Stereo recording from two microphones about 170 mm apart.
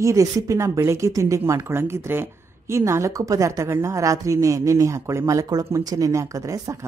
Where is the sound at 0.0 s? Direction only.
20° right (ahead or behind).